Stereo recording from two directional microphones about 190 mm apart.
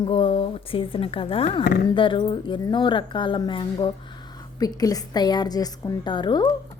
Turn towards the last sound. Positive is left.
turn(degrees=25)  # may be behind; listen again after turning